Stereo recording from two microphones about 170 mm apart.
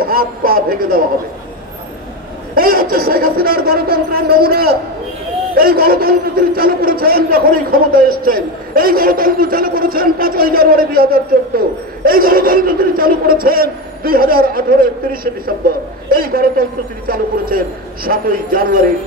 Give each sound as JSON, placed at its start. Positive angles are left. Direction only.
{"t": 0.0, "sound": "a man's voice", "side_deg": -60}
{"t": 2.5, "sound": "a man's voice", "side_deg": -60}
{"t": 16.1, "sound": "a man's voice", "side_deg": -60}